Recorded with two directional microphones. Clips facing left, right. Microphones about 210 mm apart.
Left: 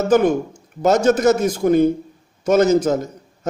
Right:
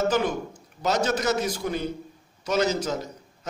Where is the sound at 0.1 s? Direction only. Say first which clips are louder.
Left 10 dB; 50° left (ahead or behind).